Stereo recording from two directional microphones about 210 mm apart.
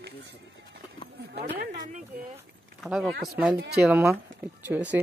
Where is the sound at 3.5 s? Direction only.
50° right (ahead or behind).